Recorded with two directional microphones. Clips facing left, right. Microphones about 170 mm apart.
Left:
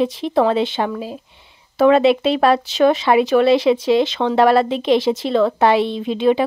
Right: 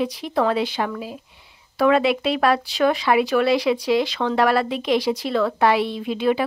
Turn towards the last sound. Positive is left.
turn(degrees=25)  # may be behind; listen again after turning